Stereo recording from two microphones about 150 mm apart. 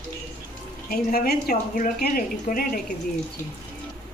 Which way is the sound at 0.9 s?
85° left.